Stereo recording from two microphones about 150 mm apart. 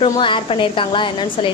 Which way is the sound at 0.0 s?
35° left (ahead or behind).